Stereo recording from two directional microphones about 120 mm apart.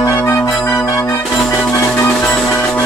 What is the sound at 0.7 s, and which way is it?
Music, 25° left (ahead or behind).